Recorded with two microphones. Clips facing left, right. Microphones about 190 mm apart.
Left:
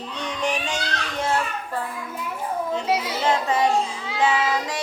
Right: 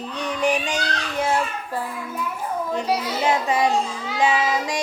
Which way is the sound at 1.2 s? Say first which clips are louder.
Right 2 dB; 10° right (ahead or behind).